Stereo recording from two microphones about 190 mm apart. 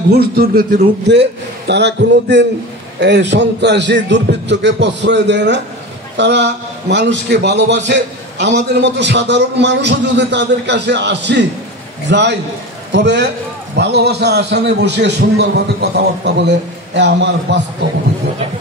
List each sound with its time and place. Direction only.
0.1 s a man's voice: 55° right (ahead or behind)